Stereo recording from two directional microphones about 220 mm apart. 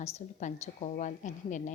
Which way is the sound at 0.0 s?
30° left (ahead or behind).